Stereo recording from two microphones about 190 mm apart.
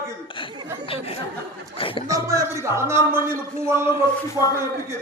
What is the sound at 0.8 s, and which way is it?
A man's voice, 30° left (ahead or behind).